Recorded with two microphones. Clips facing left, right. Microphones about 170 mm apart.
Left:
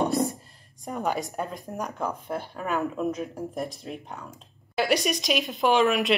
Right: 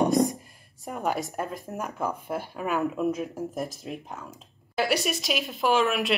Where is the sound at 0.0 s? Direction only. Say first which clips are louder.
Right 3 dB; 15° right (ahead or behind).